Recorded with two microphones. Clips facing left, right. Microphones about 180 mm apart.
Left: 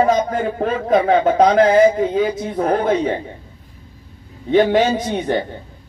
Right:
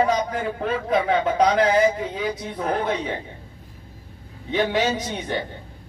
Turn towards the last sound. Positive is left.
turn(degrees=50)  # may be behind; listen again after turning